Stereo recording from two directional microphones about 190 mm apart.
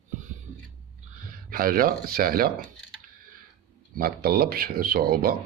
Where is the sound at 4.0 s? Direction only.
50° right (ahead or behind).